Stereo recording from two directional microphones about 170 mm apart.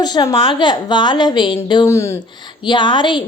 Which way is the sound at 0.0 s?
25° left (ahead or behind).